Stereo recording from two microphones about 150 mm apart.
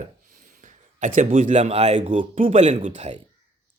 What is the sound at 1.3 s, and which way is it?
Speech, 55° right (ahead or behind).